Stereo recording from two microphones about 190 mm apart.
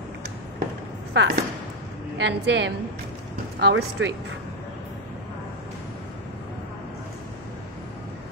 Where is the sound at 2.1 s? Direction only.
65° right (ahead or behind).